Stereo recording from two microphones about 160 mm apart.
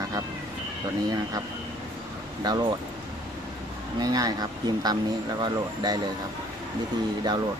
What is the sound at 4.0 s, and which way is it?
Speech, 25° right (ahead or behind).